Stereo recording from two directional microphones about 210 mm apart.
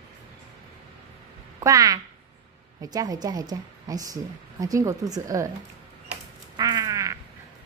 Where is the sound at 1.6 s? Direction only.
15° right (ahead or behind).